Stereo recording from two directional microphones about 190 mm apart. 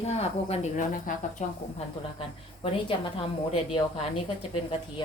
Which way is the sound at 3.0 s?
30° left (ahead or behind).